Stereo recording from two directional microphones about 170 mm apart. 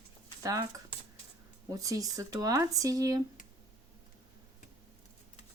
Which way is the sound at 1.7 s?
20° right (ahead or behind).